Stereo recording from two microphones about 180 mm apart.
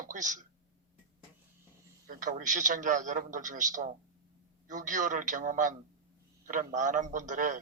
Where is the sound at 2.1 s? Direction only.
50° right (ahead or behind).